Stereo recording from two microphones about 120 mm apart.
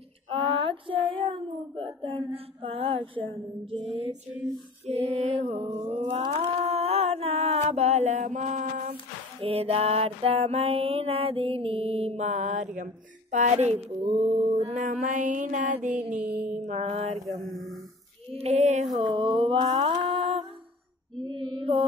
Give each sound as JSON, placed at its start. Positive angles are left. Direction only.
{"t": 0.3, "sound": "child singing", "side_deg": -45}
{"t": 2.0, "sound": "female singing", "side_deg": -50}
{"t": 4.8, "sound": "mantra", "side_deg": -55}
{"t": 5.9, "sound": "music", "side_deg": -45}
{"t": 6.3, "sound": "a sound", "side_deg": -60}
{"t": 9.4, "sound": "mantra", "side_deg": -55}
{"t": 16.6, "sound": "mantra", "side_deg": -55}
{"t": 17.3, "sound": "mantra", "side_deg": 0}
{"t": 18.3, "sound": "female singing", "side_deg": -60}
{"t": 18.9, "sound": "mantra", "side_deg": -30}
{"t": 19.1, "sound": "a sound", "side_deg": -45}
{"t": 19.9, "sound": "music", "side_deg": -50}
{"t": 21.2, "sound": "mantra", "side_deg": -40}